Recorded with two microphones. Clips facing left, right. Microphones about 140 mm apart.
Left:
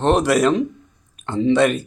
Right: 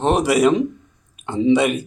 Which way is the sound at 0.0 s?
10° right (ahead or behind).